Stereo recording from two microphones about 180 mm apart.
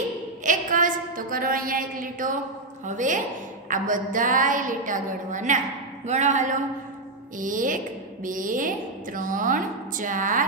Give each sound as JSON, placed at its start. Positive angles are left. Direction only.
{"t": 0.5, "sound": "a woman's voice", "side_deg": -45}